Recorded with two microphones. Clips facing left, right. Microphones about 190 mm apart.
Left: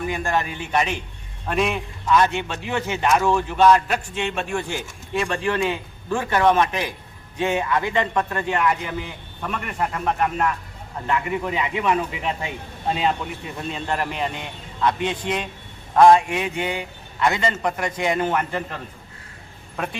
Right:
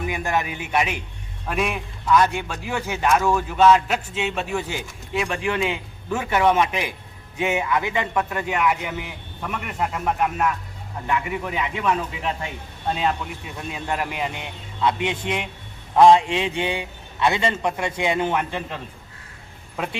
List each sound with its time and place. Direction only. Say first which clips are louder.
0.0 s a man's voice: left 1 dB; 10° right (ahead or behind)